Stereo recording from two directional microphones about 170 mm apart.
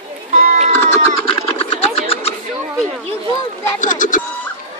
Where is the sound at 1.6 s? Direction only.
35° left (ahead or behind).